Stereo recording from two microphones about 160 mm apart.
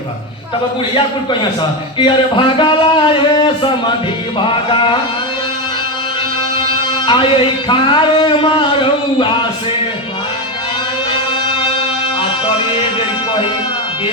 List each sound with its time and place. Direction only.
2.0 s speech: 30° left (ahead or behind)
7.0 s speech: 30° left (ahead or behind)